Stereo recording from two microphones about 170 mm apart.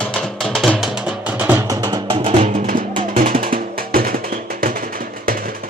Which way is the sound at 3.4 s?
60° right (ahead or behind).